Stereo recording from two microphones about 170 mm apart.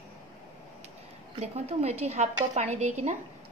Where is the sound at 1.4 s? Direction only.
40° right (ahead or behind).